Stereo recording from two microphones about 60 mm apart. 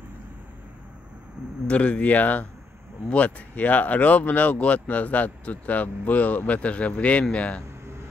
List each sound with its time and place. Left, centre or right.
1.7 s speech: left